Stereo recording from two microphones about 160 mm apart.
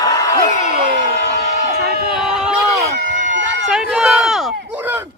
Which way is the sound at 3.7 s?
5° right (ahead or behind).